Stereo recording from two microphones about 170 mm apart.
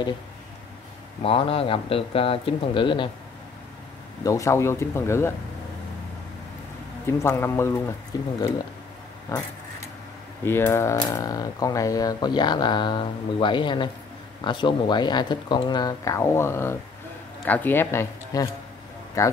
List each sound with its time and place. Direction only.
1.2 s speech: 35° left (ahead or behind)
4.2 s speech: 20° left (ahead or behind)
7.1 s speech: 15° left (ahead or behind)
9.3 s speech: 20° left (ahead or behind)